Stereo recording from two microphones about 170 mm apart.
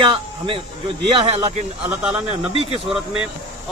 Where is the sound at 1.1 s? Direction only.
35° right (ahead or behind).